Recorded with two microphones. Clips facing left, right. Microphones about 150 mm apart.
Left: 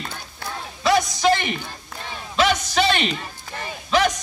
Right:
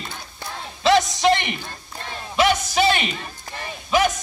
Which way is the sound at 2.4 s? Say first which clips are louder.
Right 1 dB; 10° right (ahead or behind).